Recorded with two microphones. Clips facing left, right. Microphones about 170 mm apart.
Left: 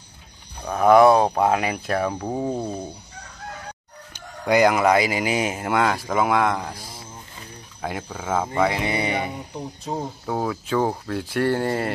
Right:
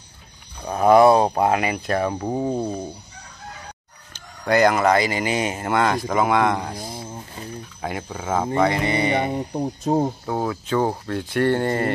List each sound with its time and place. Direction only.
0.8 s speech: 5° right (ahead or behind)
4.1 s speech: 10° left (ahead or behind)
6.8 s a sound: 55° right (ahead or behind)
7.8 s speech: centre (ahead or behind)
9.1 s speech: 50° right (ahead or behind)
10.2 s speech: centre (ahead or behind)